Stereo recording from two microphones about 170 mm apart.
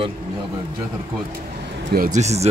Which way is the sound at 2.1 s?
40° right (ahead or behind).